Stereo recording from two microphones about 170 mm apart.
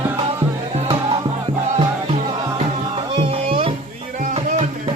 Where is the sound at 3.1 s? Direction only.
35° right (ahead or behind).